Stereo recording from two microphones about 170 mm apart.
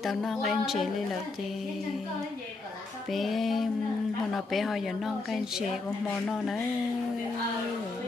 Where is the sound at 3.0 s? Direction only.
Centre (ahead or behind).